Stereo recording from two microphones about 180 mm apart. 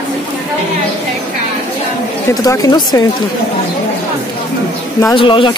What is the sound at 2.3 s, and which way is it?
Speech, 20° left (ahead or behind).